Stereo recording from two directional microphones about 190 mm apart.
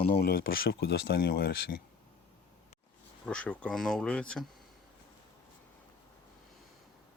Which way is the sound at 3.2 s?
5° left (ahead or behind).